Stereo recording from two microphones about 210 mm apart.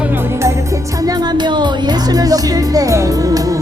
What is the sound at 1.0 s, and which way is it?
Music, 20° right (ahead or behind).